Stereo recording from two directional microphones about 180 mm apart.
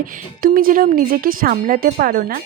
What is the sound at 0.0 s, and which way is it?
Speech, 50° right (ahead or behind).